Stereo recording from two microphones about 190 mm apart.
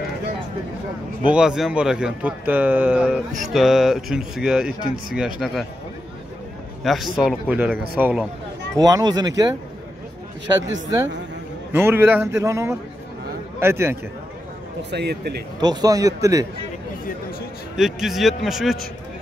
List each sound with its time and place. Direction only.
1.2 s a man's voice: 5° right (ahead or behind)
6.8 s a man's voice: centre (ahead or behind)
8.7 s a man's voice: 20° right (ahead or behind)
10.7 s a man's voice: 20° right (ahead or behind)
14.8 s a man's voice: 65° right (ahead or behind)
15.6 s a man's voice: 20° right (ahead or behind)
17.7 s a man's voice: centre (ahead or behind)